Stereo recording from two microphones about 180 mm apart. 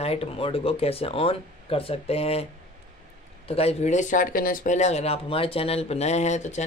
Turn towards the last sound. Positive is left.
turn(degrees=40)  # may be behind; listen again after turning